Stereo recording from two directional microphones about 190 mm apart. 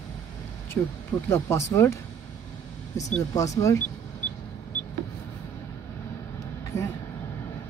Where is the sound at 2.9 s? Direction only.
15° left (ahead or behind).